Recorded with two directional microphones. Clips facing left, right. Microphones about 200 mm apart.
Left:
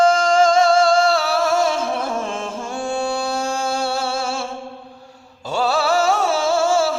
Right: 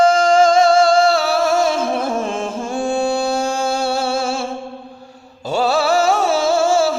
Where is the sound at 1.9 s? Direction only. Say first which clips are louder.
Right 4 dB; 15° right (ahead or behind).